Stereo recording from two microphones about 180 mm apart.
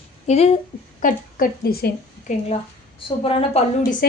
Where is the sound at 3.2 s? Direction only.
30° left (ahead or behind).